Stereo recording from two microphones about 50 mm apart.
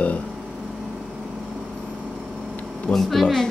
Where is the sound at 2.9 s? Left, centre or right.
Centre.